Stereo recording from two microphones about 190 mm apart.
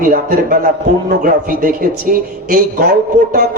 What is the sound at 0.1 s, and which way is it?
Music, 50° right (ahead or behind).